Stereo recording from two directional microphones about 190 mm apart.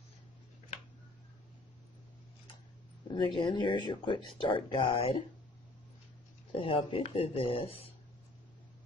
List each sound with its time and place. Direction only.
3.1 s speech: 25° left (ahead or behind)
6.5 s speech: 30° left (ahead or behind)